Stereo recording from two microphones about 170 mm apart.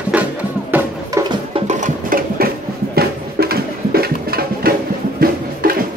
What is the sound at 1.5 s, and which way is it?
Music, 45° right (ahead or behind).